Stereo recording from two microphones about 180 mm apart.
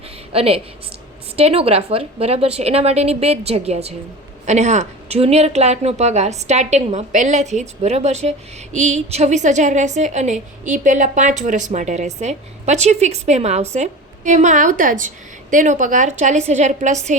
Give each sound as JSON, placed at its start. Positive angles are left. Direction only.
{"t": 0.3, "sound": "a woman's voice", "side_deg": -30}